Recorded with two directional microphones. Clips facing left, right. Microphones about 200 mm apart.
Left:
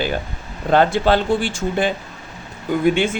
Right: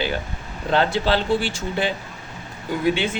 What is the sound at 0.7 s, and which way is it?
Speech, 50° left (ahead or behind).